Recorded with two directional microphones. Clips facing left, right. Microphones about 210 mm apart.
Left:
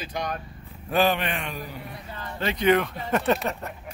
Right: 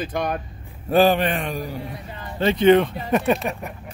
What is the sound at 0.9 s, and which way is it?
Speech, 35° right (ahead or behind).